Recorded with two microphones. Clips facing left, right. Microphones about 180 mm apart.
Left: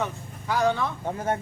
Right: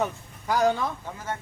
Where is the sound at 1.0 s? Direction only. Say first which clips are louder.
Left 7 dB; 55° left (ahead or behind).